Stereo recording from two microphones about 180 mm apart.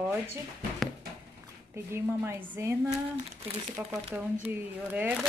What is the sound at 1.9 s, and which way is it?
A woman's voice, 15° right (ahead or behind).